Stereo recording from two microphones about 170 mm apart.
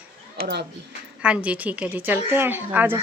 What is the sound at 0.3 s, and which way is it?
Speech, 60° right (ahead or behind).